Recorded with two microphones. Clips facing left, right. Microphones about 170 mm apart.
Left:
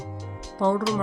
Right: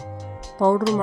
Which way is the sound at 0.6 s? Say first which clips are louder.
Right 4 dB; 45° right (ahead or behind).